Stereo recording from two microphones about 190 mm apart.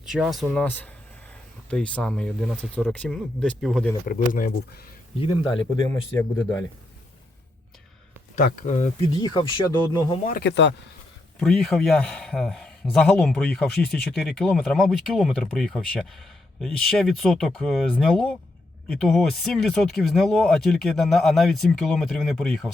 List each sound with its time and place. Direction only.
0.1 s a man's voice: centre (ahead or behind)
4.0 s speech: 45° left (ahead or behind)
5.2 s a man's voice: 30° left (ahead or behind)
8.4 s speech: 45° left (ahead or behind)
9.2 s a man's voice: 25° left (ahead or behind)
10.2 s speech: 55° left (ahead or behind)
11.3 s a man's voice: centre (ahead or behind)